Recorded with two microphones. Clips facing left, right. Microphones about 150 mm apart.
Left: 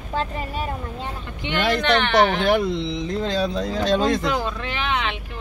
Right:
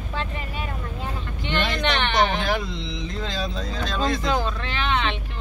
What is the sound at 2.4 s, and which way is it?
Speech, 60° left (ahead or behind).